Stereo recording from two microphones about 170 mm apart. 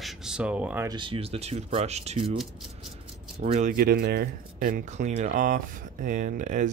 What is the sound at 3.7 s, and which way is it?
Speech, 65° right (ahead or behind).